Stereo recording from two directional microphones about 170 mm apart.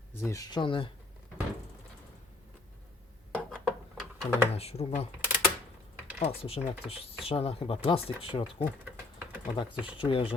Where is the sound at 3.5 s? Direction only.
5° left (ahead or behind).